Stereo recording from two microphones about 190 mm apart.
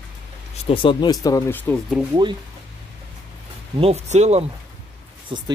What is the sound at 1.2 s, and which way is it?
Speech, 15° left (ahead or behind).